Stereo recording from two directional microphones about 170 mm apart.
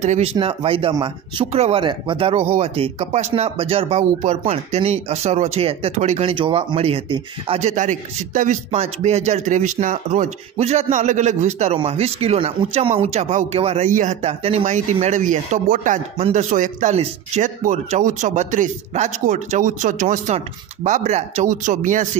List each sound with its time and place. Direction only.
0.0 s speech: 40° right (ahead or behind)